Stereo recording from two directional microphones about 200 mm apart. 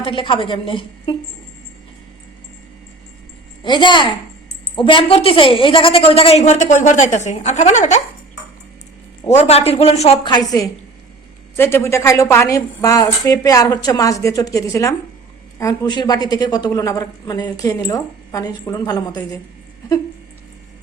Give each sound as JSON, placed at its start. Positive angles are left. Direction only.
{"t": 0.0, "sound": "a woman's voice", "side_deg": 25}
{"t": 3.6, "sound": "a woman's voice", "side_deg": 25}
{"t": 9.2, "sound": "a woman's voice", "side_deg": 35}